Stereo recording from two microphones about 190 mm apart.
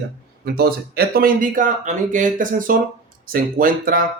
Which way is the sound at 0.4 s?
55° right (ahead or behind).